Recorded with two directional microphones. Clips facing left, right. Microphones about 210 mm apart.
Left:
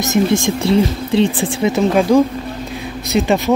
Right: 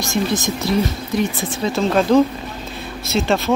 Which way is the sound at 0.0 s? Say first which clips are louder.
Left 6 dB; 25° left (ahead or behind).